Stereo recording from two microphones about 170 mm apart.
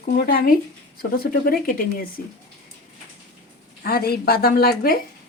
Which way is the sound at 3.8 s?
65° left (ahead or behind).